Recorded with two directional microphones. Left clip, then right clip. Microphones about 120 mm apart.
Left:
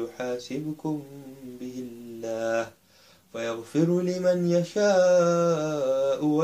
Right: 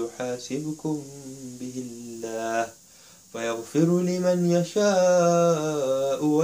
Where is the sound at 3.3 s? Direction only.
15° left (ahead or behind).